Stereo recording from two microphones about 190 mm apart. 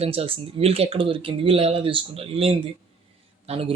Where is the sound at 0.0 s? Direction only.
30° right (ahead or behind).